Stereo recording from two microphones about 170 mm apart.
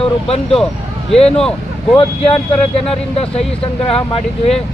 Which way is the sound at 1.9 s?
35° left (ahead or behind).